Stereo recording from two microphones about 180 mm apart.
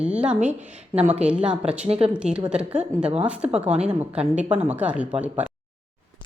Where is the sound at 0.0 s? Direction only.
5° right (ahead or behind).